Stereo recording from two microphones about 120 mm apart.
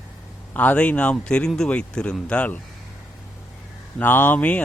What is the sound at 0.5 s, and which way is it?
Speech, 15° left (ahead or behind).